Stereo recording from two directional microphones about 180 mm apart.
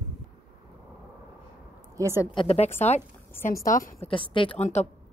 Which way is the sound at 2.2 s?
25° left (ahead or behind).